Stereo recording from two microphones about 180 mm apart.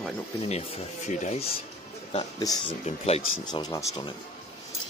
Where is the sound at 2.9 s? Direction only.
35° left (ahead or behind).